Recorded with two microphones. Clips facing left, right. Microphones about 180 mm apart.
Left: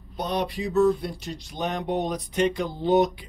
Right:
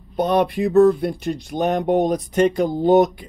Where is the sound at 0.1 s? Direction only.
55° right (ahead or behind).